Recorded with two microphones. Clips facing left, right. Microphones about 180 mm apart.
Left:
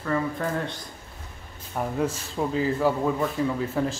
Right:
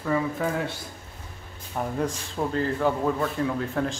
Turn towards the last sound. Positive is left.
turn(degrees=5)  # may be behind; listen again after turning